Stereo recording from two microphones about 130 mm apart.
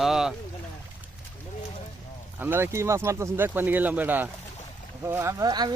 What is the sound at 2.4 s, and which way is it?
Speech, 15° right (ahead or behind).